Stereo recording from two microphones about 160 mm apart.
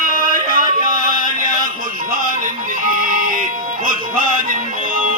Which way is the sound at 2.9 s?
60° right (ahead or behind).